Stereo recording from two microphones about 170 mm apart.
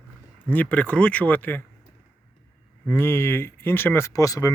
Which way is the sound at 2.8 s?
15° left (ahead or behind).